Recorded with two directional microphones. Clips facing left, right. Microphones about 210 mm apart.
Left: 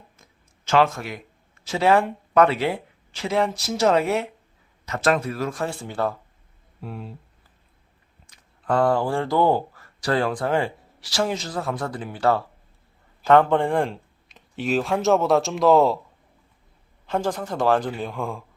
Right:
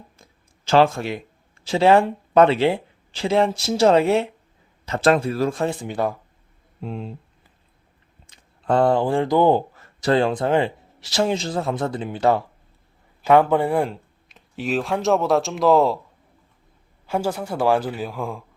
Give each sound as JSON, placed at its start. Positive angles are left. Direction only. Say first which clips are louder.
{"t": 0.2, "sound": "a sound", "louder": "right 3 dB", "side_deg": -30}
{"t": 1.6, "sound": "speech", "louder": "right 4 dB", "side_deg": -30}
{"t": 8.3, "sound": "speech", "louder": "right 3 dB", "side_deg": -25}
{"t": 17.1, "sound": "speech", "louder": "right 1 dB", "side_deg": -10}